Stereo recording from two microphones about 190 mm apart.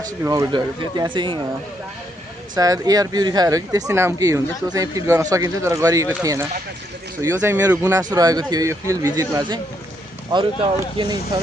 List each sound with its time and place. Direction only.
0.2 s speech: 15° right (ahead or behind)
2.6 s speech: 20° right (ahead or behind)